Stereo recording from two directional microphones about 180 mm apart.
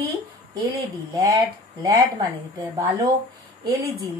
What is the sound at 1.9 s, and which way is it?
Speech, 20° right (ahead or behind).